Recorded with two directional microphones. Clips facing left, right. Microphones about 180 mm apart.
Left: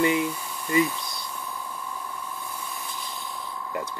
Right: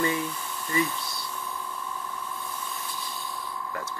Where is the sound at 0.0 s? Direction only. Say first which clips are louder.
Left 5 dB; 15° left (ahead or behind).